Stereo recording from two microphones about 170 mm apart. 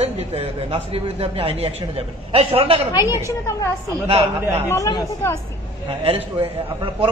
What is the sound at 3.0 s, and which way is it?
Speech, 15° right (ahead or behind).